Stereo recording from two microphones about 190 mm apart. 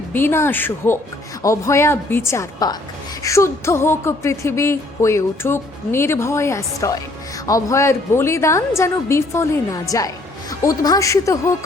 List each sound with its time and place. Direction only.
0.1 s music: 10° left (ahead or behind)